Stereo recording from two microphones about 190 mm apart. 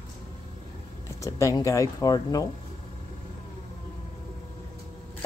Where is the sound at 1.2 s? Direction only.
15° left (ahead or behind).